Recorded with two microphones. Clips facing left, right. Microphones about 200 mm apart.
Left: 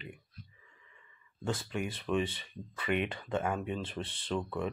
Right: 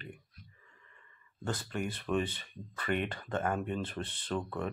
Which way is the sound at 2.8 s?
5° left (ahead or behind).